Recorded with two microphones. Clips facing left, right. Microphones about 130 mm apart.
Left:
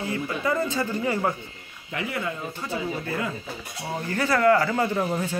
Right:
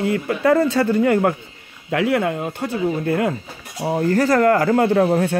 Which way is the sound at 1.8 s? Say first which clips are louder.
Right 11 dB; 80° right.